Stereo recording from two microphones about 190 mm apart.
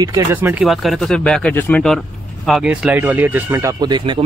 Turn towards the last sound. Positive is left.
turn(degrees=-25)  # may be behind; listen again after turning